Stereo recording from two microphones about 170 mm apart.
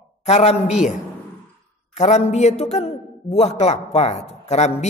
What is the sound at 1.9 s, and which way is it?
A man's voice, 40° left (ahead or behind).